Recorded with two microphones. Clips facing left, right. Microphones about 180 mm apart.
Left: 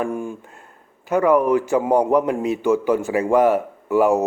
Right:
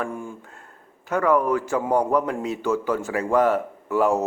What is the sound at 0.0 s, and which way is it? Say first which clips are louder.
A man's voice: left 5 dB; 15° left (ahead or behind).